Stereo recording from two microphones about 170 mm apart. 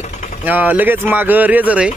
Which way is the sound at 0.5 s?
10° right (ahead or behind).